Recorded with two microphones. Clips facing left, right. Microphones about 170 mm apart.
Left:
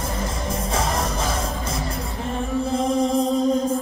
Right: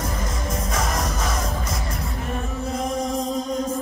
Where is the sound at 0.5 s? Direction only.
30° left (ahead or behind).